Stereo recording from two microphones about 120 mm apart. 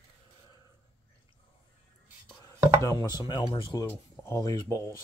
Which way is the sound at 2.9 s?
35° left (ahead or behind).